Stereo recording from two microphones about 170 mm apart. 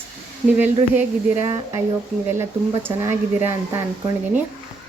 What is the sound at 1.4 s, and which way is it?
Speech, 20° right (ahead or behind).